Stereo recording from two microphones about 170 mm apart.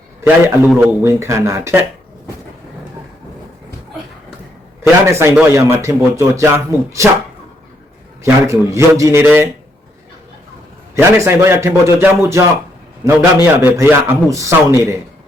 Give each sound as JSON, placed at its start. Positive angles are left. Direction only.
{"t": 0.4, "sound": "a man's voice", "side_deg": -15}
{"t": 4.8, "sound": "a man's voice", "side_deg": -15}
{"t": 8.2, "sound": "a man's voice", "side_deg": -15}
{"t": 10.9, "sound": "a man's voice", "side_deg": -15}